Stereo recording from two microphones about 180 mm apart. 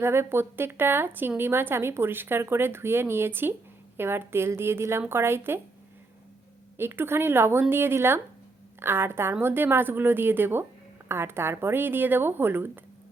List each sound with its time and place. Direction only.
0.0 s a woman's voice: 15° right (ahead or behind)
6.7 s a woman's voice: 10° right (ahead or behind)